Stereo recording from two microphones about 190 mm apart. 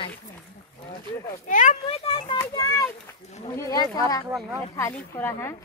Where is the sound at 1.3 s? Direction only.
45° left (ahead or behind).